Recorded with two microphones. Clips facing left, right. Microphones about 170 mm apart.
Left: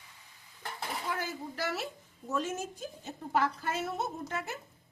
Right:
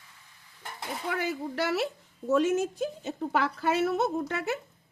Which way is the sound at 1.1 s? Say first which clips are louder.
Right 6 dB; 70° right (ahead or behind).